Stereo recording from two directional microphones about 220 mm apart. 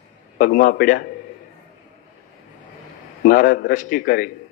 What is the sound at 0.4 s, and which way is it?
Speech, 40° left (ahead or behind).